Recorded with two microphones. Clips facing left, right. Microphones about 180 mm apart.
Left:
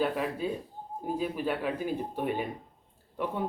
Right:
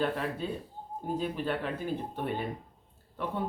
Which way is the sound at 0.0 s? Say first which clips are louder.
Left 2 dB; 10° left (ahead or behind).